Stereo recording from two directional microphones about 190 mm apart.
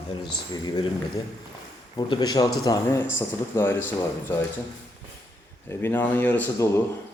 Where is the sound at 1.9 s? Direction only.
20° left (ahead or behind).